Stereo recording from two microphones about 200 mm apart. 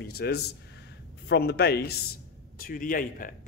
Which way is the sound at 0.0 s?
50° left (ahead or behind).